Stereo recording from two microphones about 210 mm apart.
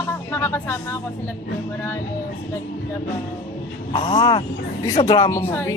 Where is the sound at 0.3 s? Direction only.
10° left (ahead or behind).